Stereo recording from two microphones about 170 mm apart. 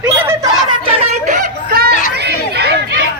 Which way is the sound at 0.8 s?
45° right (ahead or behind).